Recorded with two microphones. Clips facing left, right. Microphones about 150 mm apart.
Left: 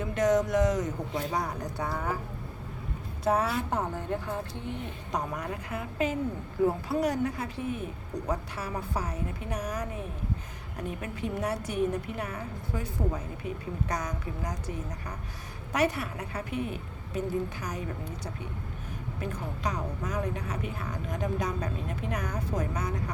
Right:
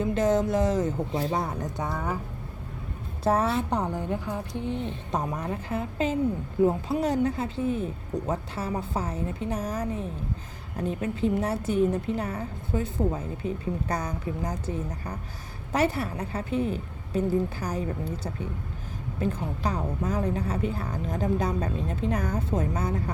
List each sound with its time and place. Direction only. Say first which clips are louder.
0.0 s a woman's voice: right 2 dB; 30° right (ahead or behind)
3.2 s a woman's voice: right 3 dB; 30° right (ahead or behind)
5.1 s a woman's voice: right 2 dB; 25° right (ahead or behind)